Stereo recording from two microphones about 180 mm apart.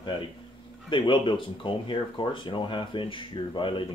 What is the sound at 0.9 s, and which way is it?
Speech, 25° left (ahead or behind).